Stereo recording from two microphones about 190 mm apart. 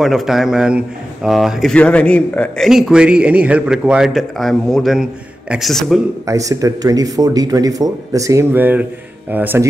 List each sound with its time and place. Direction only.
0.0 s a man's voice: centre (ahead or behind)
6.2 s speech: 15° right (ahead or behind)